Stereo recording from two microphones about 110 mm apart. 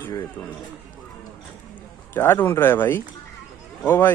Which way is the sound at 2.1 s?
20° left (ahead or behind).